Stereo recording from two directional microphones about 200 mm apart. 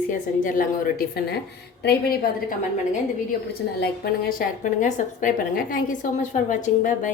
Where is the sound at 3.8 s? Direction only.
50° left (ahead or behind).